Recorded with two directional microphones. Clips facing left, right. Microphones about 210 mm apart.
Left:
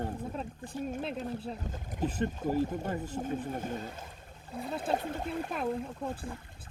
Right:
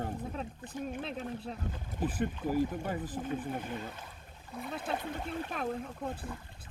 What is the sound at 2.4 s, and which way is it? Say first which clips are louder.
Speech: left 2 dB; 45° left (ahead or behind).